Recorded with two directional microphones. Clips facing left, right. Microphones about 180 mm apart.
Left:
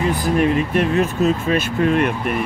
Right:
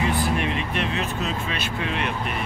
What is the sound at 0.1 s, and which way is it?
Speech, 40° left (ahead or behind).